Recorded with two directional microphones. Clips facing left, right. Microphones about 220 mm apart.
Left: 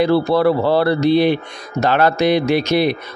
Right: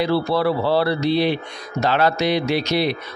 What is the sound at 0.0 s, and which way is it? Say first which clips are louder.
A man's voice: left 5 dB; 50° left (ahead or behind).